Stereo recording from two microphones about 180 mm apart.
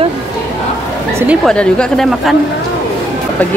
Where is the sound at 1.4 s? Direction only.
5° left (ahead or behind).